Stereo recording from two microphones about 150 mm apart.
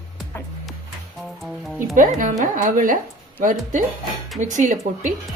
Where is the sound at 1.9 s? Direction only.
60° right (ahead or behind).